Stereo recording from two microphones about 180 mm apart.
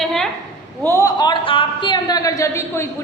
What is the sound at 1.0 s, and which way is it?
A woman's voice, 25° left (ahead or behind).